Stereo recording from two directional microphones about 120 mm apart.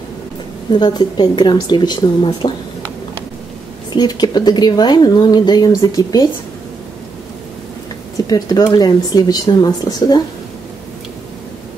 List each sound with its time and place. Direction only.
0.7 s speech: 35° left (ahead or behind)
3.9 s speech: 35° left (ahead or behind)
8.3 s speech: 30° left (ahead or behind)